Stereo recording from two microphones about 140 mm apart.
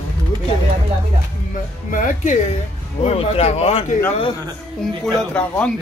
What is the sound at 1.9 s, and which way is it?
Speech, 60° left (ahead or behind).